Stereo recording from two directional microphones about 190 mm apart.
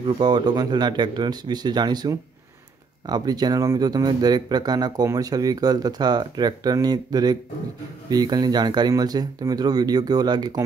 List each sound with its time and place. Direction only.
0.2 s speech: 20° right (ahead or behind)